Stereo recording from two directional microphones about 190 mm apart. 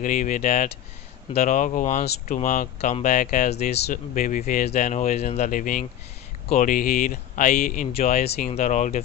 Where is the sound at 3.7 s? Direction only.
60° left (ahead or behind).